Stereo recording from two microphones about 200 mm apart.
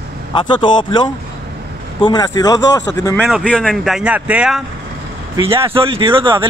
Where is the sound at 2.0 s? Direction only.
20° left (ahead or behind).